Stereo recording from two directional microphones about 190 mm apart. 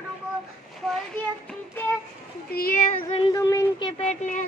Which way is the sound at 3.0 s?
25° left (ahead or behind).